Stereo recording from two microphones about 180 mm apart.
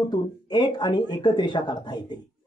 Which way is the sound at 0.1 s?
25° left (ahead or behind).